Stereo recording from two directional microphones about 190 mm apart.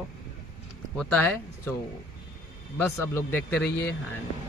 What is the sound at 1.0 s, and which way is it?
Speech, 5° left (ahead or behind).